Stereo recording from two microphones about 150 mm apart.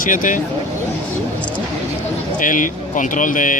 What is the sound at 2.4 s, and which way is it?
Speech, 60° left (ahead or behind).